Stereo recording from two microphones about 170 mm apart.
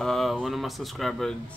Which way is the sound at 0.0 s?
Centre (ahead or behind).